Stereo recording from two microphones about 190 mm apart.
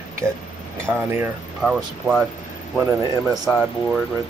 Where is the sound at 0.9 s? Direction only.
10° right (ahead or behind).